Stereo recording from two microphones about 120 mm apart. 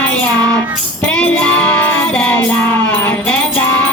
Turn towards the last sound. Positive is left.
turn(degrees=20)  # may be behind; listen again after turning